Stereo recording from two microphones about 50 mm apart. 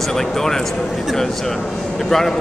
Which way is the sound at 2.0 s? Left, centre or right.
Centre.